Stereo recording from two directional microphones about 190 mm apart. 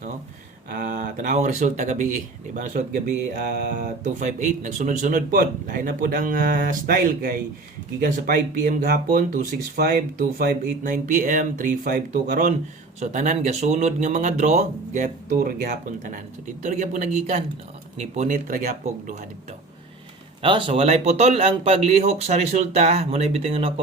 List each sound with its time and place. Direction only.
0.7 s speech: 50° right (ahead or behind)
8.6 s speech: 45° right (ahead or behind)
20.4 s speech: 25° right (ahead or behind)